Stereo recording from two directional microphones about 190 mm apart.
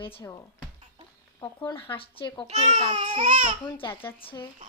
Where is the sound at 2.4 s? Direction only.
35° right (ahead or behind).